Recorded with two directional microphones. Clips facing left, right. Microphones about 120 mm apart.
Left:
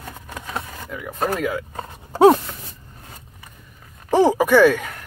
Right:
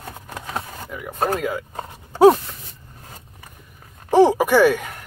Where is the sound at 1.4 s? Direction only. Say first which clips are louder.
Left 1 dB; 25° right (ahead or behind).